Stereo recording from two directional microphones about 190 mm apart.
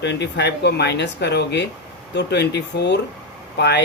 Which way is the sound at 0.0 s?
65° left (ahead or behind).